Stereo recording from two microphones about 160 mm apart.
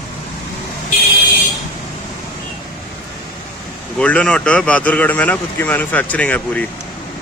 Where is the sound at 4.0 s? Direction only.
5° left (ahead or behind).